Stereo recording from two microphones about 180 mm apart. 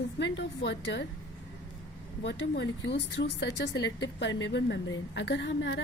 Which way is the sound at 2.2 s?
70° left (ahead or behind).